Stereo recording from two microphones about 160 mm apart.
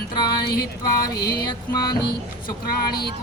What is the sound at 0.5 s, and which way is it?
Music, 75° left (ahead or behind).